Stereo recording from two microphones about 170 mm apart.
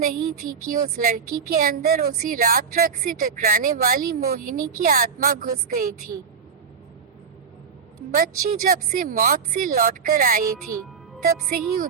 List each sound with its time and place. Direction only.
0.0 s a woman's voice: 50° right (ahead or behind)
8.1 s a woman's voice: 55° right (ahead or behind)